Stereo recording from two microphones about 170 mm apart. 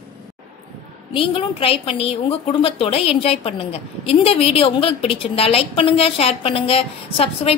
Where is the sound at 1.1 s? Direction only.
30° left (ahead or behind).